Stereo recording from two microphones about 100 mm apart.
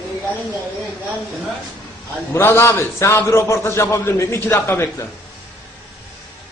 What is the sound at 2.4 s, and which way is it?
A man's voice, 25° left (ahead or behind).